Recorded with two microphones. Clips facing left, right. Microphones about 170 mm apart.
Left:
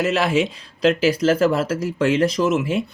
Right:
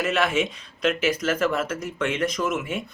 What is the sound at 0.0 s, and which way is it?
Speech, 30° left (ahead or behind).